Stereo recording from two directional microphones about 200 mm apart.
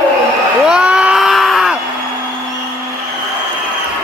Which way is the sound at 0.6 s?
5° right (ahead or behind).